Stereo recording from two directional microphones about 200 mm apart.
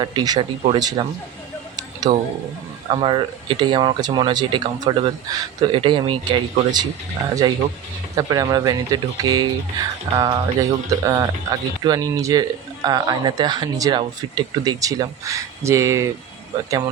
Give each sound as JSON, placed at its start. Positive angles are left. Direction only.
{"t": 0.0, "sound": "speech", "side_deg": -20}
{"t": 2.1, "sound": "speech", "side_deg": -20}
{"t": 8.1, "sound": "speech", "side_deg": -20}